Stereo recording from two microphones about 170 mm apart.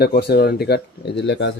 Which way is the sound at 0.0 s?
70° left (ahead or behind).